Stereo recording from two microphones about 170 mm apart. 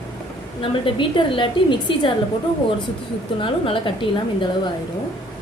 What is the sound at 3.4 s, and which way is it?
A woman's voice, 30° left (ahead or behind).